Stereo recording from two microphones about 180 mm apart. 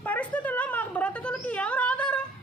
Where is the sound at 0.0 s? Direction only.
10° left (ahead or behind).